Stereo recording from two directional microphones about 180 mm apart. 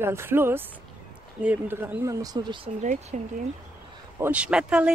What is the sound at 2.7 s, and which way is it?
Speech, 45° right (ahead or behind).